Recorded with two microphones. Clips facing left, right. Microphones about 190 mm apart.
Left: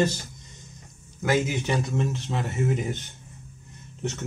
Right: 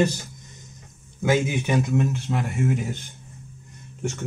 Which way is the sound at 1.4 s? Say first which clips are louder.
Right 3 dB; 15° right (ahead or behind).